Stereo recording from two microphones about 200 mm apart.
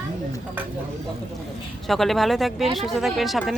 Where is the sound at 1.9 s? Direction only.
Centre (ahead or behind).